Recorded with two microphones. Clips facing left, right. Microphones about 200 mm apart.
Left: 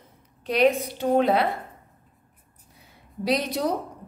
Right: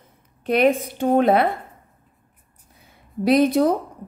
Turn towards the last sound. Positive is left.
turn(degrees=-55)  # may be behind; listen again after turning